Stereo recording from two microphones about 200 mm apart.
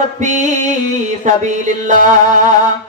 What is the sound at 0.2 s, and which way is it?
Speech, 35° right (ahead or behind).